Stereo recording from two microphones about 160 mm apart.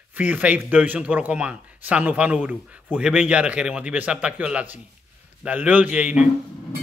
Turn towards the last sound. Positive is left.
turn(degrees=-10)  # may be behind; listen again after turning